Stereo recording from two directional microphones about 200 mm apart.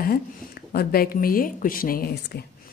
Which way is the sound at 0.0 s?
50° left (ahead or behind).